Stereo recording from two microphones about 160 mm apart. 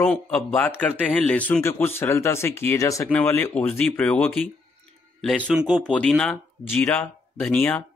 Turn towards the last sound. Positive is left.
turn(degrees=10)  # may be behind; listen again after turning